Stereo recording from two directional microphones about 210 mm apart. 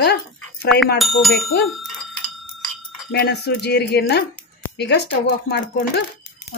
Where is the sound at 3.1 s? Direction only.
50° left (ahead or behind).